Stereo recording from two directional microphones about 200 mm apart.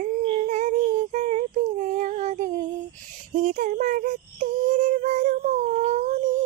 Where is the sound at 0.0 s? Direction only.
40° right (ahead or behind).